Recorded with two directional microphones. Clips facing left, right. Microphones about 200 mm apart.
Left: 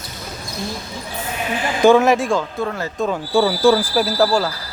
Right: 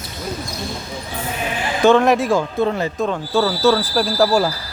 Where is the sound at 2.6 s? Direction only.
20° right (ahead or behind).